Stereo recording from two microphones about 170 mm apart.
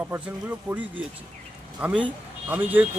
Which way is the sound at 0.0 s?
10° right (ahead or behind).